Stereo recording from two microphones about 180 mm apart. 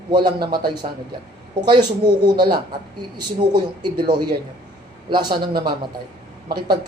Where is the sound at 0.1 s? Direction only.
25° right (ahead or behind).